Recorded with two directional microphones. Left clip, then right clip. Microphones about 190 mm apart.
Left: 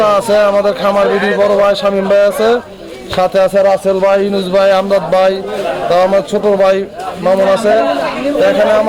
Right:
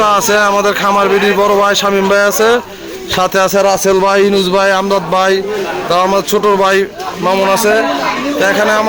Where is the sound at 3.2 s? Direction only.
5° right (ahead or behind).